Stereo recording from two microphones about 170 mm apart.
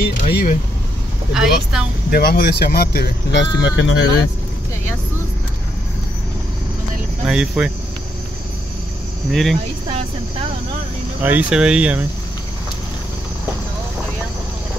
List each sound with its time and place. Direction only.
0.0 s vehicle: 65° left (ahead or behind)
1.3 s speech: 5° right (ahead or behind)
2.0 s speech: 65° left (ahead or behind)
3.6 s speech: 90° left
7.2 s speech: 5° right (ahead or behind)
9.3 s speech: centre (ahead or behind)
11.2 s speech: 10° right (ahead or behind)